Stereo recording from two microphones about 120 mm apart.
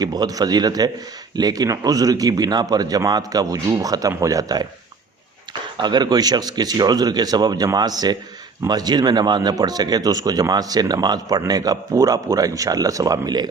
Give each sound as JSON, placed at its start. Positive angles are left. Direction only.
{"t": 0.0, "sound": "speech", "side_deg": -35}
{"t": 5.7, "sound": "speech", "side_deg": -40}